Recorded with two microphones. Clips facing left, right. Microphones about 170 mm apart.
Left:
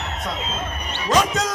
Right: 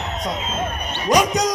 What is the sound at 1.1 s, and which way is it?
Basketball bounce, 15° right (ahead or behind).